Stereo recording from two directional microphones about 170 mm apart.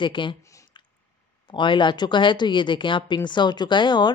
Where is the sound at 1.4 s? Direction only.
30° left (ahead or behind).